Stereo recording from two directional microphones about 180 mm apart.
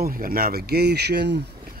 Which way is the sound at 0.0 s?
55° right (ahead or behind).